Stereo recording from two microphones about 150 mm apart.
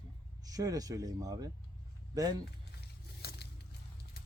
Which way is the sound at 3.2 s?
90° left.